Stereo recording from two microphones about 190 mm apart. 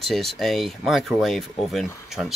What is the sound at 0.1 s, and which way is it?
Speech, centre (ahead or behind).